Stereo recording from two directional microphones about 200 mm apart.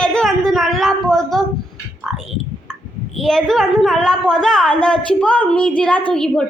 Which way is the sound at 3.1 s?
Centre (ahead or behind).